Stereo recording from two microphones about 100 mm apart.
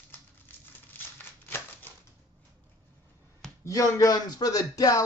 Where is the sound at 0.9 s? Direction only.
20° left (ahead or behind).